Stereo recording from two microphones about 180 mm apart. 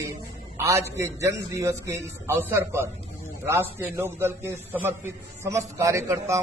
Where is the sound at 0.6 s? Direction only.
15° right (ahead or behind).